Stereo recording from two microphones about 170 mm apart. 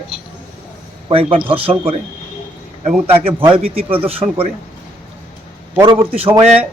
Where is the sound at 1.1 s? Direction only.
35° right (ahead or behind).